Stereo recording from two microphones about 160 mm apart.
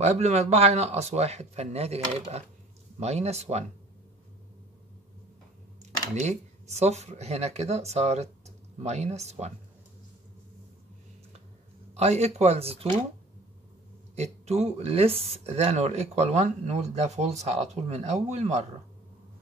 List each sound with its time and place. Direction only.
0.0 s speech: 45° right (ahead or behind)
6.1 s speech: 45° right (ahead or behind)
11.9 s speech: 45° right (ahead or behind)
14.1 s speech: 45° right (ahead or behind)